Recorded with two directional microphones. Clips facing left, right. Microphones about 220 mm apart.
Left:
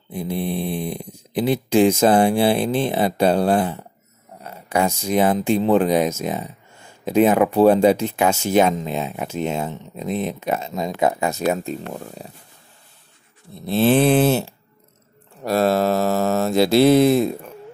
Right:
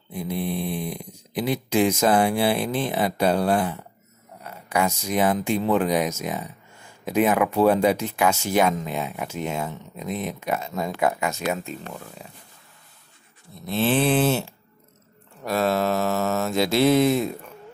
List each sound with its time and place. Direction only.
0.1 s speech: 30° left (ahead or behind)
13.6 s mantra: 35° left (ahead or behind)